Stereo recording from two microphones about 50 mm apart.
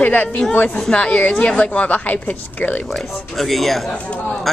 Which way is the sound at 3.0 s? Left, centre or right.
Centre.